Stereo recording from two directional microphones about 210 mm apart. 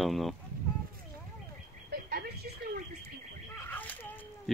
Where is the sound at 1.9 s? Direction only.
45° right (ahead or behind).